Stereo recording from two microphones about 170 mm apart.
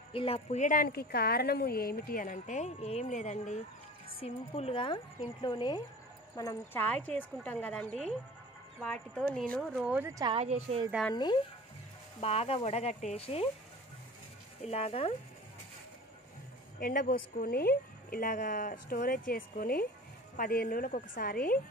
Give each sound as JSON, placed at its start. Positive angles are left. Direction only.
{"t": 0.1, "sound": "a woman's voice", "side_deg": 35}
{"t": 9.8, "sound": "speech", "side_deg": -10}
{"t": 10.1, "sound": "speech", "side_deg": -25}
{"t": 10.4, "sound": "speech", "side_deg": -40}
{"t": 12.2, "sound": "speech", "side_deg": 35}
{"t": 14.6, "sound": "speech", "side_deg": 35}
{"t": 16.8, "sound": "a woman's voice", "side_deg": 55}